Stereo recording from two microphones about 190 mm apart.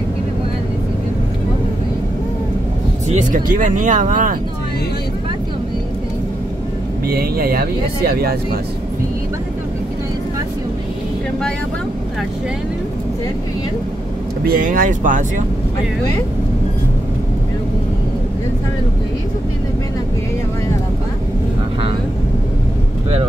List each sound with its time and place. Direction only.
3.1 s speech: 40° right (ahead or behind)
7.1 s speech: 50° right (ahead or behind)
14.4 s speech: 50° right (ahead or behind)